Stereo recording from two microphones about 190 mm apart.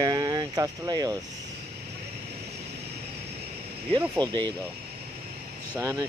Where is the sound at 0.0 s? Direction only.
20° right (ahead or behind).